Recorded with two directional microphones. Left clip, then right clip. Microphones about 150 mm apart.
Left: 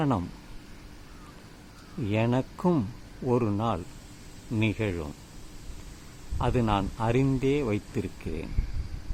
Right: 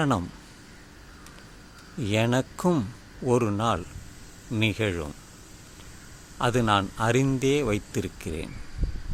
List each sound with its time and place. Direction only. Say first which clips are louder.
0.0 s speech: right 3 dB; 20° right (ahead or behind)
2.0 s a man's voice: right 3 dB; 20° right (ahead or behind)
6.4 s speech: right 4 dB; 20° right (ahead or behind)